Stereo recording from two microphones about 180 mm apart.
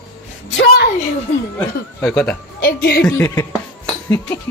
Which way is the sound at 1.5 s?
15° left (ahead or behind).